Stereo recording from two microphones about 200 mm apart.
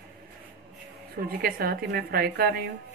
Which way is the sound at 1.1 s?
50° right (ahead or behind).